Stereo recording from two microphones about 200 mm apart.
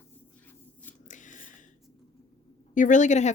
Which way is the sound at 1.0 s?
40° left (ahead or behind).